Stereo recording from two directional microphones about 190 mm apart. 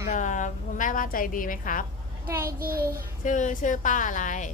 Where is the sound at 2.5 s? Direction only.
50° right (ahead or behind).